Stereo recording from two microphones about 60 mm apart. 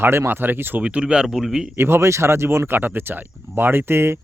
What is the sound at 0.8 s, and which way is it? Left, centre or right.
Speech, centre.